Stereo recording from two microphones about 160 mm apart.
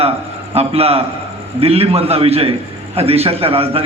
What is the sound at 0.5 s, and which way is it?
A man's voice, 40° right (ahead or behind).